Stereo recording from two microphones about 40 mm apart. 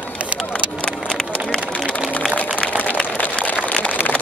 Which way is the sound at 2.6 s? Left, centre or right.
Centre.